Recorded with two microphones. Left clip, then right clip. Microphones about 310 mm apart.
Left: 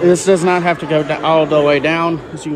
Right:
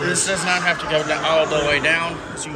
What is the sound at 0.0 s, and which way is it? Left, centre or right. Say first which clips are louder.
A man's voice: left 9 dB; centre.